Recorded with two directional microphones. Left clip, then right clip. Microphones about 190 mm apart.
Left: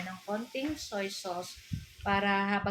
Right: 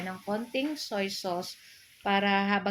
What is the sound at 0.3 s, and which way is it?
Speech, 40° right (ahead or behind).